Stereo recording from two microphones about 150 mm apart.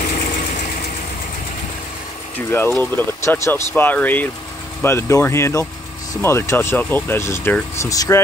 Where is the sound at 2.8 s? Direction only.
15° left (ahead or behind).